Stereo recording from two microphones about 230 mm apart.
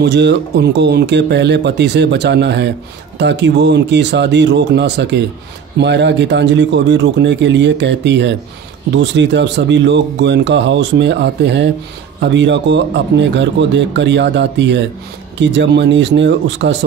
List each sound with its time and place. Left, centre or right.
0.0 s speech: right